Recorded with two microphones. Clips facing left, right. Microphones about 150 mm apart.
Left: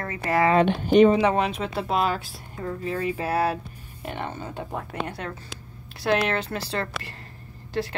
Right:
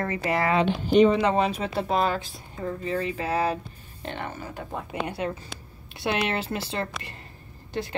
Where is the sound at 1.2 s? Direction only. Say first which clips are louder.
Left 1 dB; centre (ahead or behind).